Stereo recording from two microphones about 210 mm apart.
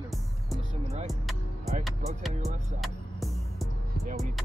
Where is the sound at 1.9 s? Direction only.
Centre (ahead or behind).